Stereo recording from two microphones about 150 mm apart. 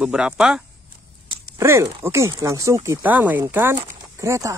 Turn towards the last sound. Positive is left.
turn(degrees=-20)  # may be behind; listen again after turning